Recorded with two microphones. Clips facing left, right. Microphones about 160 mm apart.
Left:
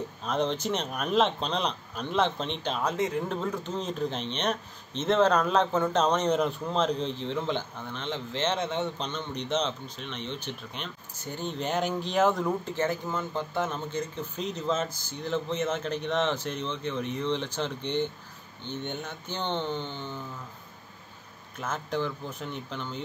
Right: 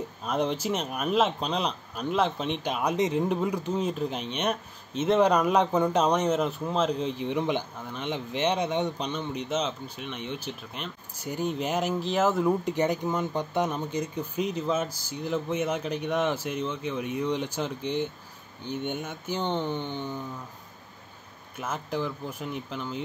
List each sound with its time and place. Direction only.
0.2 s speech: 10° right (ahead or behind)
12.6 s speech: 15° right (ahead or behind)
21.5 s speech: 5° right (ahead or behind)